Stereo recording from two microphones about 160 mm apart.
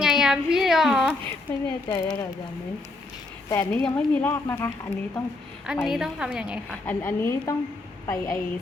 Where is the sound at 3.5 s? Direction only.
15° left (ahead or behind).